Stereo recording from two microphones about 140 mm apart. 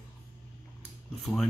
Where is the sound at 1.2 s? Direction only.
Centre (ahead or behind).